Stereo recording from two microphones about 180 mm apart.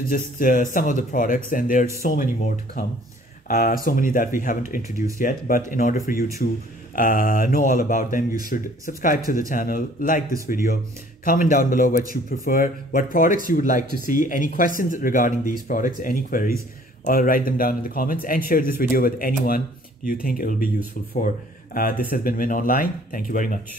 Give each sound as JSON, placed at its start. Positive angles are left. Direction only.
{"t": 0.1, "sound": "speech", "side_deg": 50}
{"t": 21.7, "sound": "speech", "side_deg": 55}